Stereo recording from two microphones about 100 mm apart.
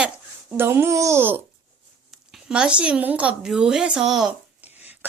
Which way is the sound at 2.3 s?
10° right (ahead or behind).